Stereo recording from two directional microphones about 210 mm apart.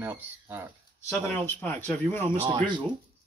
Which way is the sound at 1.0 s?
10° left (ahead or behind).